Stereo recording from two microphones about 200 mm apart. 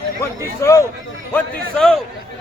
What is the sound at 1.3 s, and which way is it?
Speech, 5° left (ahead or behind).